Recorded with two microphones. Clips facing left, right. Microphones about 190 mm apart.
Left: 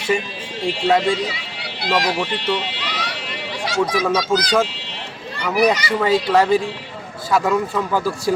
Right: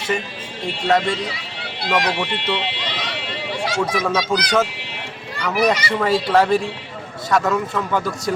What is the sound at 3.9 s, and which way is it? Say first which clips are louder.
Speech: left 2 dB; 5° left (ahead or behind).